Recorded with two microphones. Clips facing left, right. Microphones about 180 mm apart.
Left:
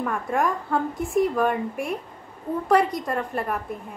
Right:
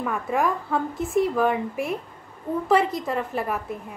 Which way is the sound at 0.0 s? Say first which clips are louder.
Even; 5° right (ahead or behind).